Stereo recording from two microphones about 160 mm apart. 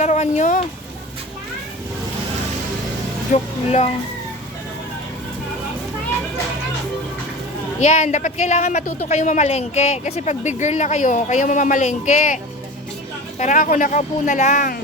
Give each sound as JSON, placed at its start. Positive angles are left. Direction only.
{"t": 0.0, "sound": "speech", "side_deg": 45}
{"t": 3.3, "sound": "speech", "side_deg": 40}
{"t": 7.8, "sound": "speech", "side_deg": 50}
{"t": 13.4, "sound": "speech", "side_deg": 55}